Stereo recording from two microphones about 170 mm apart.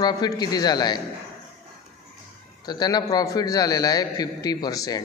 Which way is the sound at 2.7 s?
25° left (ahead or behind).